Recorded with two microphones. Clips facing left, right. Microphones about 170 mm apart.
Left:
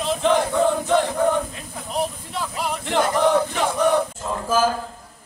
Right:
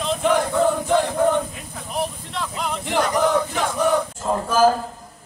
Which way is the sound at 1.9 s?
5° left (ahead or behind).